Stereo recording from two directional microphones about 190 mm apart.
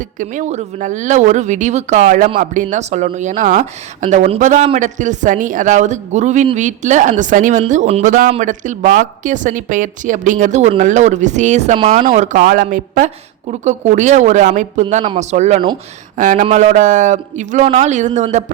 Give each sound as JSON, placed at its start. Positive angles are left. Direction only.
{"t": 0.0, "sound": "speech", "side_deg": -40}